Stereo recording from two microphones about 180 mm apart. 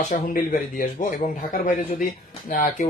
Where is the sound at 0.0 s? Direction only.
45° left (ahead or behind).